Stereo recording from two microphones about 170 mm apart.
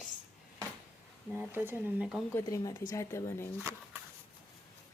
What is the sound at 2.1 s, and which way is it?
Speech, 15° left (ahead or behind).